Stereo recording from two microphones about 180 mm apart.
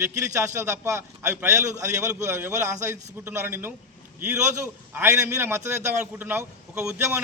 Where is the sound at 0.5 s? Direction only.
15° right (ahead or behind).